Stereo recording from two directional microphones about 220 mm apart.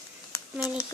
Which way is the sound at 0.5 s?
Centre (ahead or behind).